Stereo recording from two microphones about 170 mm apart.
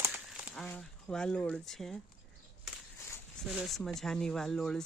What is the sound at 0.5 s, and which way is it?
Speech, 5° left (ahead or behind).